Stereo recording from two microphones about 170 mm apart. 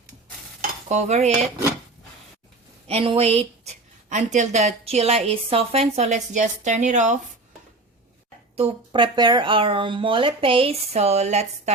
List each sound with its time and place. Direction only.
0.9 s a woman's voice: 45° right (ahead or behind)
2.8 s a woman's voice: 35° right (ahead or behind)
8.5 s speech: 30° right (ahead or behind)